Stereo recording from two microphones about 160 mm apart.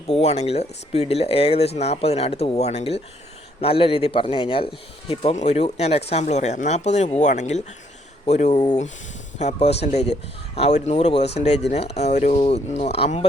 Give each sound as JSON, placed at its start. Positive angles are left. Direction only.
{"t": 0.1, "sound": "speech", "side_deg": 40}
{"t": 8.5, "sound": "speech", "side_deg": 25}
{"t": 9.4, "sound": "speech", "side_deg": 40}